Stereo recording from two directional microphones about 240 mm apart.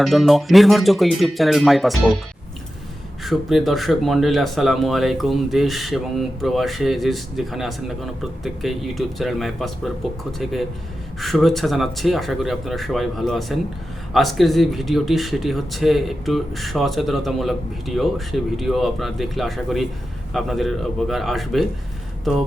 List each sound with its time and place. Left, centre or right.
0.0 s speech: centre
3.2 s speech: centre